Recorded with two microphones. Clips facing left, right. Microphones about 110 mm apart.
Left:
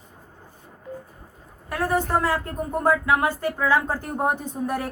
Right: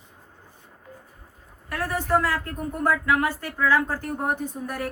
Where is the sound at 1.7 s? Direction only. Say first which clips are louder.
Left 1 dB; 20° left (ahead or behind).